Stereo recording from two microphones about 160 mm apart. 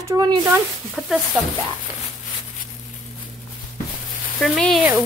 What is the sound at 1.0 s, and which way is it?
Speech, centre (ahead or behind).